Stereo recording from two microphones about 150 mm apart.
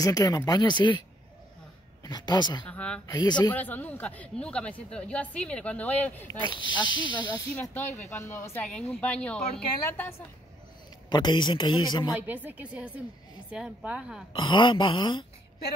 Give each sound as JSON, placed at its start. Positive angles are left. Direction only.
{"t": 0.0, "sound": "speech", "side_deg": 25}
{"t": 2.0, "sound": "speech", "side_deg": 25}
{"t": 2.7, "sound": "speech", "side_deg": 5}
{"t": 3.1, "sound": "speech", "side_deg": 30}
{"t": 3.5, "sound": "speech", "side_deg": 10}
{"t": 6.3, "sound": "speech", "side_deg": 30}
{"t": 11.1, "sound": "speech", "side_deg": 30}
{"t": 12.1, "sound": "speech", "side_deg": -10}
{"t": 14.3, "sound": "speech", "side_deg": 30}